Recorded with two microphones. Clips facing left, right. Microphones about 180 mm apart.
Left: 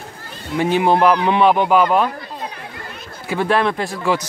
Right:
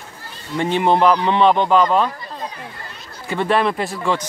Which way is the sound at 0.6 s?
5° left (ahead or behind).